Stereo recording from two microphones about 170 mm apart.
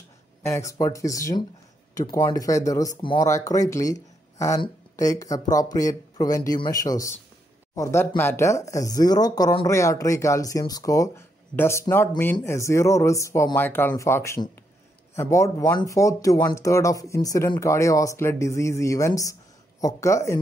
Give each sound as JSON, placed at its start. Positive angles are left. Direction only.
{"t": 0.4, "sound": "speech", "side_deg": 15}